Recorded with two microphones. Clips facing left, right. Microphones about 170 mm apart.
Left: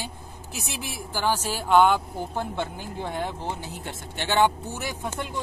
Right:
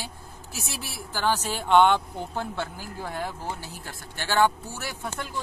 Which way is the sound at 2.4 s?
20° left (ahead or behind).